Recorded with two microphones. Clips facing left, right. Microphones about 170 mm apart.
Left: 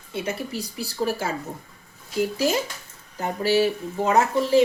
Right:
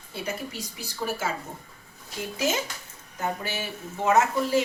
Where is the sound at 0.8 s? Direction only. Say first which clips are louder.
Left 4 dB; 35° left (ahead or behind).